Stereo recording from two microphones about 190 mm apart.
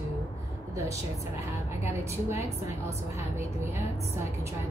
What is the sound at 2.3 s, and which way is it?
Speech, 15° right (ahead or behind).